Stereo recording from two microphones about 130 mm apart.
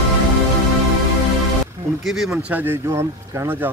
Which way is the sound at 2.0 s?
5° right (ahead or behind).